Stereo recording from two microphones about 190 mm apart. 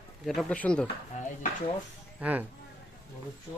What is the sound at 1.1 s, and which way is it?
Speech, 40° left (ahead or behind).